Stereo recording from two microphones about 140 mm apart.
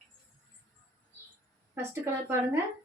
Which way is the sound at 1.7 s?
20° right (ahead or behind).